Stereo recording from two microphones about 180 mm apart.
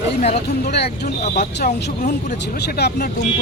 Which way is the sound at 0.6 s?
65° left (ahead or behind).